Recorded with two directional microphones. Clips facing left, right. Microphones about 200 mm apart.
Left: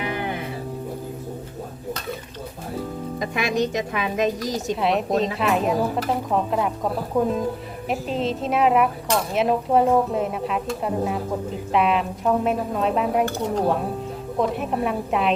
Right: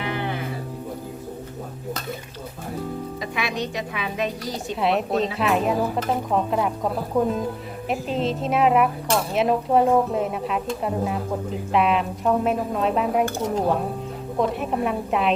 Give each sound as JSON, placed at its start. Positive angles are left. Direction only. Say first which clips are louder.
{"t": 3.2, "sound": "a woman's voice", "louder": "left 7 dB", "side_deg": 45}
{"t": 4.7, "sound": "speech", "louder": "even", "side_deg": 0}